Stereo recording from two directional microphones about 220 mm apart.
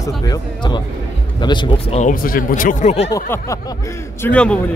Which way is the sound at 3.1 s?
15° left (ahead or behind).